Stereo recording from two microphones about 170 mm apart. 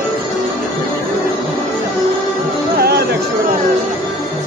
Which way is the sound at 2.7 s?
65° right (ahead or behind).